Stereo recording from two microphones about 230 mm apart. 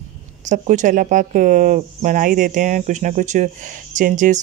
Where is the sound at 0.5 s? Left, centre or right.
Right.